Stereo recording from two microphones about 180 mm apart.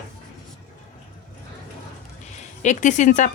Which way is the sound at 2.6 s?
40° left (ahead or behind).